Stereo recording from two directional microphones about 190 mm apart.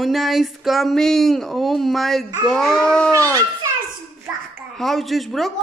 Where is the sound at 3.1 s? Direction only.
15° right (ahead or behind).